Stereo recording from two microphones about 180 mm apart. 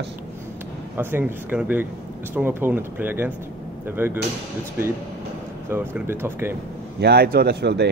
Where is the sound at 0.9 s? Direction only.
10° right (ahead or behind).